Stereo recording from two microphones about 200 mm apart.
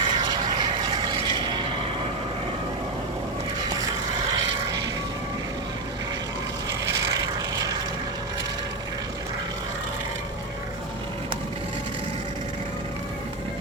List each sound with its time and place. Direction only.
0.0 s vehicle: 20° right (ahead or behind)
7.1 s vehicle: 20° right (ahead or behind)